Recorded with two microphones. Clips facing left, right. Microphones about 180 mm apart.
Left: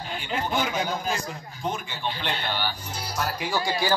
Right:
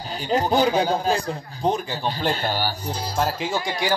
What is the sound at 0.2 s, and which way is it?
Speech, 40° right (ahead or behind).